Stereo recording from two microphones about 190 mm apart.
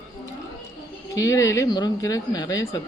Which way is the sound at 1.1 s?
15° left (ahead or behind).